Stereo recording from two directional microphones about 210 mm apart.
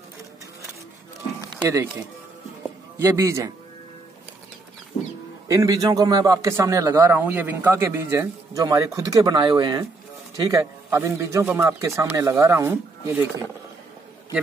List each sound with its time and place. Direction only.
1.6 s speech: 15° right (ahead or behind)
3.0 s a man's voice: 15° right (ahead or behind)
5.5 s a man's voice: 15° right (ahead or behind)